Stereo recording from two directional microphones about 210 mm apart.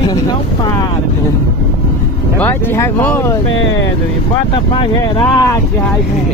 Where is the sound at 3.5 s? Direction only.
60° left (ahead or behind).